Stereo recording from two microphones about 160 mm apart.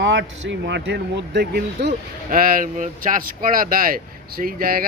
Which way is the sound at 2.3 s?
60° right (ahead or behind).